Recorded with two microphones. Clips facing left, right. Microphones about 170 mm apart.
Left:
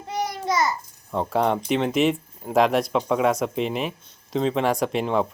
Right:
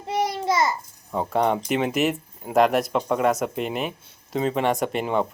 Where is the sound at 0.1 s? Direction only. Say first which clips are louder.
Right 2 dB; 25° right (ahead or behind).